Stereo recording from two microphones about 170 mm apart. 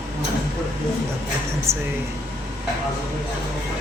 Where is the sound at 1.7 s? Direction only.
35° right (ahead or behind).